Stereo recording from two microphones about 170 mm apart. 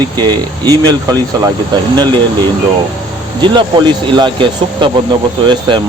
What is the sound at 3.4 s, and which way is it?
Speech, 25° right (ahead or behind).